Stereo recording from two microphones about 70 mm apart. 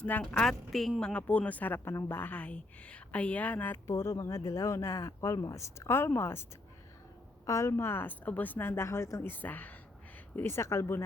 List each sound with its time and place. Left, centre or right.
0.0 s a woman's voice: centre
0.3 s a woman's voice: centre
1.1 s a woman's voice: left
1.8 s a woman's voice: left
3.8 s speech: left
7.4 s speech: left
9.3 s a woman's voice: left
10.3 s speech: left